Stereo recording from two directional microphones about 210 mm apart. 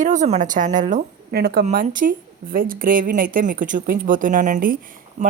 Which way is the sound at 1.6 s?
40° right (ahead or behind).